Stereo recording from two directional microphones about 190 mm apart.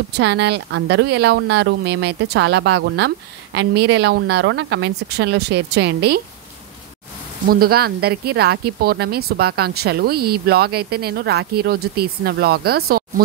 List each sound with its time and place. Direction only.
0.2 s speech: 60° right (ahead or behind)
7.4 s speech: 50° right (ahead or behind)